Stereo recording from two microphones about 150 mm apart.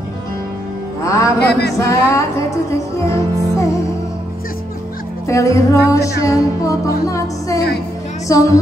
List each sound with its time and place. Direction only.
1.0 s music: 20° left (ahead or behind)
1.4 s music: 90° left
1.8 s music: 20° left (ahead or behind)
5.3 s music: 20° left (ahead or behind)